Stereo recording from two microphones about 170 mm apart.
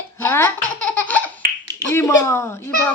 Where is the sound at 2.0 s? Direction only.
15° left (ahead or behind).